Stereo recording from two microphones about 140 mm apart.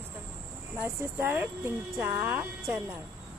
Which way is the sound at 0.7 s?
20° right (ahead or behind).